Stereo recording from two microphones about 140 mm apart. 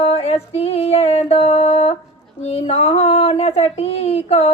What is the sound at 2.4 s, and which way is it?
Speech, 50° left (ahead or behind).